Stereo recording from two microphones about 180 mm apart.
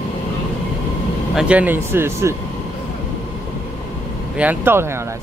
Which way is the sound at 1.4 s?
5° right (ahead or behind).